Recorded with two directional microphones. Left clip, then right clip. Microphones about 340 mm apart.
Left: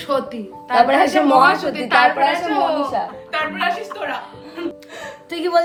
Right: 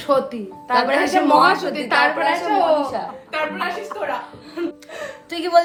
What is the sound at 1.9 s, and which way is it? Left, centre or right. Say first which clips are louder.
Speech: left 3 dB; centre.